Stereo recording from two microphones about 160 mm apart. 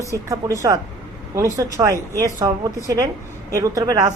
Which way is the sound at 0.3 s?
20° right (ahead or behind).